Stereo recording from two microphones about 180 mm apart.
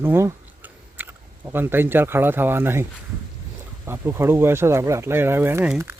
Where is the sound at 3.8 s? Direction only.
15° right (ahead or behind).